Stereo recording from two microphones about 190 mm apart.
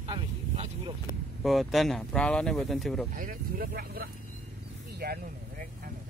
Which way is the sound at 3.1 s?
45° right (ahead or behind).